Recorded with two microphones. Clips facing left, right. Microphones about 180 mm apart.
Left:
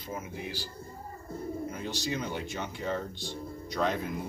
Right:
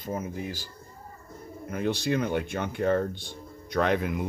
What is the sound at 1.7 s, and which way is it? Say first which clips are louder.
Speech: right 7 dB; 60° right (ahead or behind).